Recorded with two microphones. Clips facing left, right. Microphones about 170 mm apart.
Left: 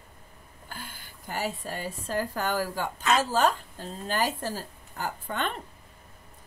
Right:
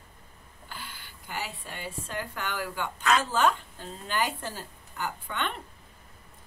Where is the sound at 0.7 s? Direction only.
45° left (ahead or behind).